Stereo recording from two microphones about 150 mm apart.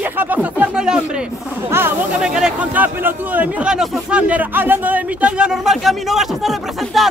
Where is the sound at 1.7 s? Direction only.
15° right (ahead or behind).